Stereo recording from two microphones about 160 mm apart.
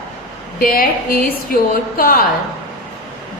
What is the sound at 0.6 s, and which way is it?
Speech, 60° left (ahead or behind).